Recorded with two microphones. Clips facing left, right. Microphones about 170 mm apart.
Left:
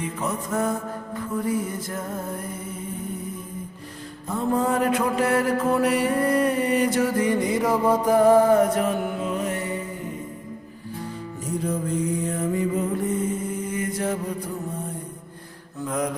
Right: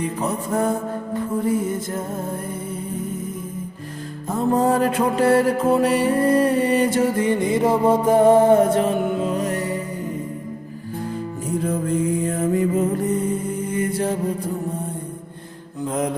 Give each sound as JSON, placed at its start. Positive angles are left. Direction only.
{"t": 0.0, "sound": "music", "side_deg": -35}
{"t": 4.3, "sound": "music", "side_deg": -40}
{"t": 9.3, "sound": "music", "side_deg": -40}
{"t": 12.2, "sound": "music", "side_deg": -45}
{"t": 13.7, "sound": "music", "side_deg": -30}
{"t": 15.9, "sound": "music", "side_deg": -25}